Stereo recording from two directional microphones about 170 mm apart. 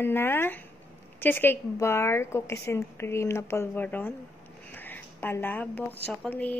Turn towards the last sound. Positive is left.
turn(degrees=10)  # may be behind; listen again after turning